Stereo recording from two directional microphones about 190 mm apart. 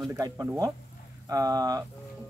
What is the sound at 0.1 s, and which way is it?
Speech, 20° right (ahead or behind).